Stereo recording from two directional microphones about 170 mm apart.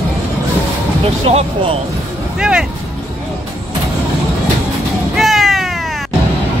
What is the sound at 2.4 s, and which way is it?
Speech, 5° right (ahead or behind).